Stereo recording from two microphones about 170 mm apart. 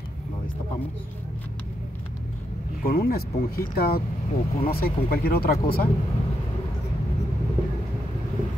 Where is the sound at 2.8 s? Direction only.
60° left (ahead or behind).